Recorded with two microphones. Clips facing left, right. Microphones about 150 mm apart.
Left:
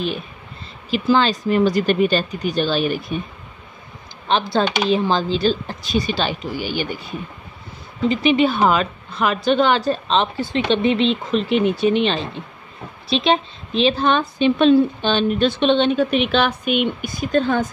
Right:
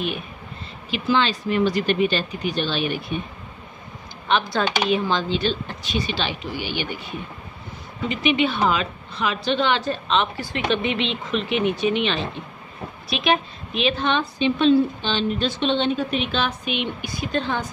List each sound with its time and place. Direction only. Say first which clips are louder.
0.8 s a woman's voice: left 4 dB; 40° left (ahead or behind)
4.3 s a woman's voice: left 3 dB; 30° left (ahead or behind)
8.1 s a woman's voice: left 4 dB; 35° left (ahead or behind)
10.8 s a woman's voice: left 7 dB; 35° left (ahead or behind)